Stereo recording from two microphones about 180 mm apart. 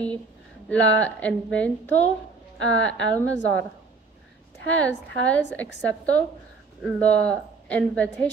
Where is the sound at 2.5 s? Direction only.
90° left.